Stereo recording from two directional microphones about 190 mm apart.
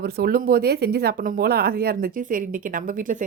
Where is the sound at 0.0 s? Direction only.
55° right (ahead or behind).